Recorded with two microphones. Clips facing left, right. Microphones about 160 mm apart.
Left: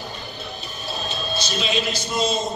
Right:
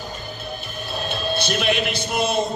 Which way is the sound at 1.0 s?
60° right (ahead or behind).